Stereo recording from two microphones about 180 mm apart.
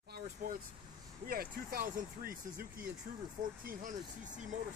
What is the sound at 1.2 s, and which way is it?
Speech, 55° right (ahead or behind).